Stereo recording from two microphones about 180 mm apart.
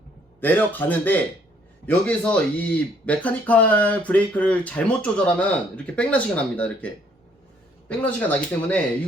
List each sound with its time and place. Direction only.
0.3 s speech: 10° left (ahead or behind)